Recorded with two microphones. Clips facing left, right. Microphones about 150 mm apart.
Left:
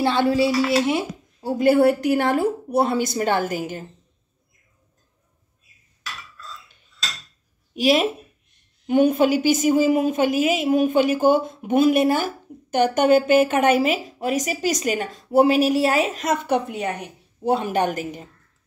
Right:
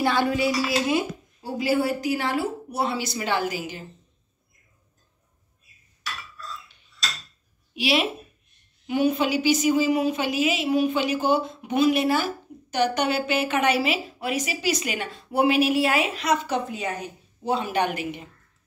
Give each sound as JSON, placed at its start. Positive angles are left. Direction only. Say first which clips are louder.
{"t": 0.0, "sound": "a sound", "louder": "left 4 dB", "side_deg": 25}
{"t": 1.4, "sound": "a woman's voice", "louder": "left 8 dB", "side_deg": 55}
{"t": 7.7, "sound": "a woman's voice", "louder": "left 5 dB", "side_deg": 45}